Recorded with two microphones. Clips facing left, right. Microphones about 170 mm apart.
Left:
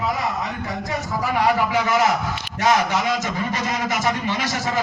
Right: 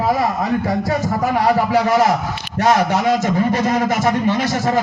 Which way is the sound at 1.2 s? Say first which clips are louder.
Right 3 dB; 40° right (ahead or behind).